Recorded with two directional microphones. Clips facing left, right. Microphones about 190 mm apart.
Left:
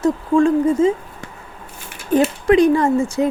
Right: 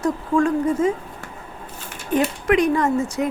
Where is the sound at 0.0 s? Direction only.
25° left (ahead or behind).